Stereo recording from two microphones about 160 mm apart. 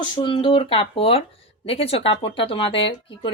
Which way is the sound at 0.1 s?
30° left (ahead or behind).